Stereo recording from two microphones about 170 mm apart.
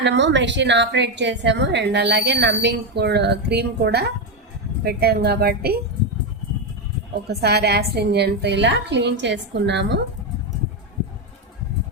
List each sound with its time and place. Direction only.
0.0 s a woman's voice: 90° right; by 5.7 s 65° right (ahead or behind)
7.3 s a woman's voice: 75° right (ahead or behind); by 10.0 s 90° right